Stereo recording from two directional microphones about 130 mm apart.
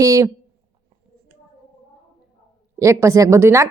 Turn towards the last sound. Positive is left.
turn(degrees=-20)  # may be behind; listen again after turning